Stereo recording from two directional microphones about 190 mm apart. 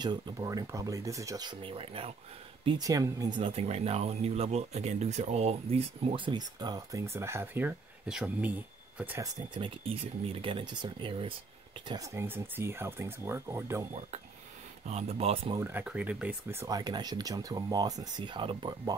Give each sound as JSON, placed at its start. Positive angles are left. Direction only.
{"t": 0.0, "sound": "speech", "side_deg": -20}
{"t": 9.5, "sound": "speech", "side_deg": -30}
{"t": 11.9, "sound": "speech", "side_deg": -15}
{"t": 14.9, "sound": "speech", "side_deg": -35}
{"t": 15.5, "sound": "speech", "side_deg": -10}